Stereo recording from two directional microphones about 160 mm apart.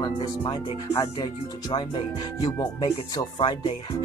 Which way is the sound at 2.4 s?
25° left (ahead or behind).